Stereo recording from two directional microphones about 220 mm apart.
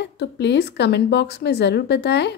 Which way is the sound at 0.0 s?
50° left (ahead or behind).